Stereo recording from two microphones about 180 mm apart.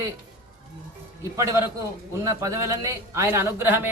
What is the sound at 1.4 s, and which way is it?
A man's voice, 15° right (ahead or behind).